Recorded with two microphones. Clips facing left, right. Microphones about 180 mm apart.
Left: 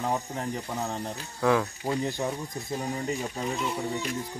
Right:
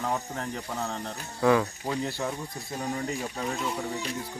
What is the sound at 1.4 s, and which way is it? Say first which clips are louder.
Speech: right 2 dB; centre (ahead or behind).